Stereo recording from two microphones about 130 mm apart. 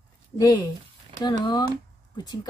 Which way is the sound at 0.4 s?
30° left (ahead or behind).